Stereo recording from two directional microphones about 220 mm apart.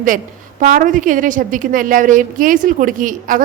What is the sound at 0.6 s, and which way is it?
A woman's voice, 35° right (ahead or behind).